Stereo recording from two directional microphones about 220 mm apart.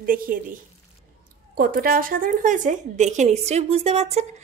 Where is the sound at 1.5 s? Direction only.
40° right (ahead or behind).